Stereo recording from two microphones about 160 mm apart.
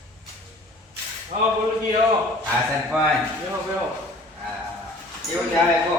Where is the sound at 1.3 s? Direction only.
45° right (ahead or behind).